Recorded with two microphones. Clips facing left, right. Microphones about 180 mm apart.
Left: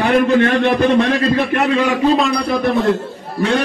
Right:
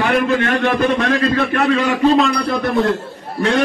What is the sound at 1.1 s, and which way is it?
Speech, 20° left (ahead or behind).